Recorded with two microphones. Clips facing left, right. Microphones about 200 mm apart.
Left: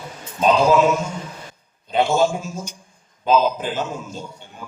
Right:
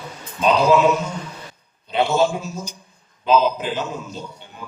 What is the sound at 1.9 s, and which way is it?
A man's voice, 45° left (ahead or behind).